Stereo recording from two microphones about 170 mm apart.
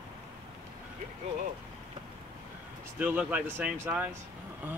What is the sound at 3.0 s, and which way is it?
Speech, 10° right (ahead or behind).